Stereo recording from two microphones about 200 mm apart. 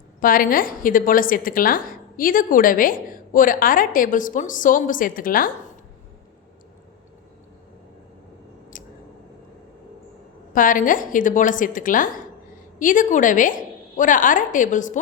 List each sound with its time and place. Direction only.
0.2 s a woman's voice: 45° left (ahead or behind)
8.7 s scissors: 40° left (ahead or behind)
10.5 s a woman's voice: 40° left (ahead or behind)